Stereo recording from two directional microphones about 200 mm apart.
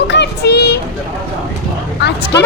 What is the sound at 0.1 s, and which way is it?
Child singing, 55° left (ahead or behind).